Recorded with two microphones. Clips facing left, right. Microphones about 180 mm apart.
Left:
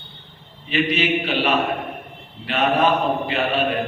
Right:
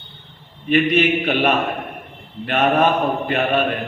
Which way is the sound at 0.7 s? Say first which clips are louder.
Right 4 dB; 55° right (ahead or behind).